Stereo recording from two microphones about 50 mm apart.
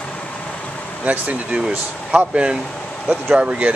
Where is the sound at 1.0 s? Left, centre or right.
Right.